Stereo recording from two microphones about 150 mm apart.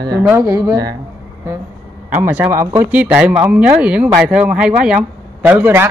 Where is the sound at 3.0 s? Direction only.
10° right (ahead or behind).